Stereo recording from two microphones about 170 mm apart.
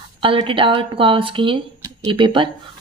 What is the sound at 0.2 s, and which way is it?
Speech, 30° right (ahead or behind).